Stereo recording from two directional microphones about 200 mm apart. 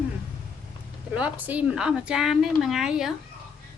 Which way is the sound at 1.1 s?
5° right (ahead or behind).